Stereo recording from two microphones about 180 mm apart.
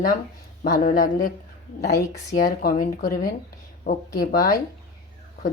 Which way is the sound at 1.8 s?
65° left (ahead or behind).